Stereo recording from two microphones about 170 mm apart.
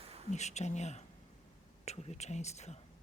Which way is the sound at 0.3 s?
40° left (ahead or behind).